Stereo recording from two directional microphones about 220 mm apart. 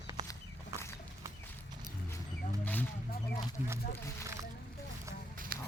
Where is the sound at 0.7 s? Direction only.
15° right (ahead or behind).